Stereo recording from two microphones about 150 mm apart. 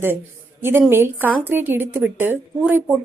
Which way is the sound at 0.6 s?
15° right (ahead or behind).